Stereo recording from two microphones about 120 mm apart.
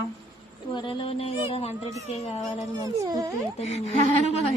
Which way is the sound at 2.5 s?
30° right (ahead or behind).